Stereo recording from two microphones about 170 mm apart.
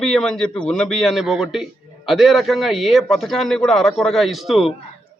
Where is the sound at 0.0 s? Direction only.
5° left (ahead or behind).